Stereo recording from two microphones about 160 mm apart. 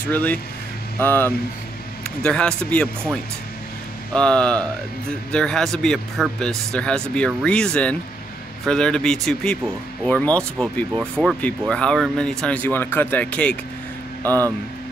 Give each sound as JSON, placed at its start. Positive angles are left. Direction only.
{"t": 0.1, "sound": "speech", "side_deg": 10}
{"t": 4.1, "sound": "speech", "side_deg": 5}
{"t": 14.2, "sound": "speech", "side_deg": -20}